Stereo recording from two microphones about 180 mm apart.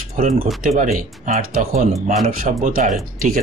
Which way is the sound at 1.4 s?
50° right (ahead or behind).